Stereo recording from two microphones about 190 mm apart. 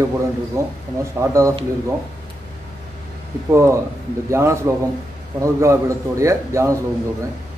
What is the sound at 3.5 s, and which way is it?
A man's voice, 15° right (ahead or behind).